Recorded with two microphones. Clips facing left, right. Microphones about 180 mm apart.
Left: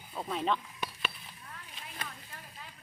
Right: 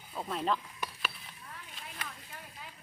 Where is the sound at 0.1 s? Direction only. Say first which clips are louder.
Left 1 dB; centre (ahead or behind).